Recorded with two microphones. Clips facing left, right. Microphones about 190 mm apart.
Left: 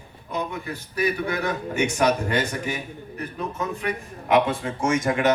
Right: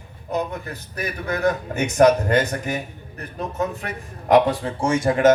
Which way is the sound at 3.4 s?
40° right (ahead or behind).